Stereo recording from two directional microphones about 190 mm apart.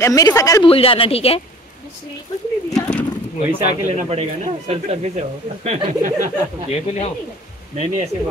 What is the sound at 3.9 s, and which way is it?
Speech, 35° right (ahead or behind).